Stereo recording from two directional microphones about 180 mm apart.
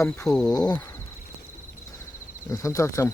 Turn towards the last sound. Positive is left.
turn(degrees=15)  # may be behind; listen again after turning